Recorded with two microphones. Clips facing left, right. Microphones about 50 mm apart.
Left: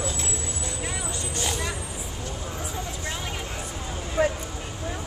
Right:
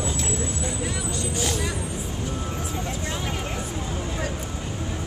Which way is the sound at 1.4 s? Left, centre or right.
Centre.